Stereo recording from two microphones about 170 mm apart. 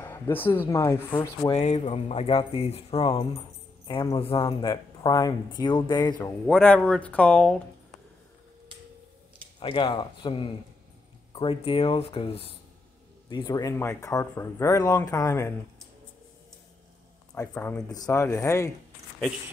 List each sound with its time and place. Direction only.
0.1 s speech: 10° left (ahead or behind)
1.5 s speech: 40° left (ahead or behind)
6.4 s speech: 5° left (ahead or behind)
9.6 s speech: 30° left (ahead or behind)
17.3 s speech: 15° left (ahead or behind)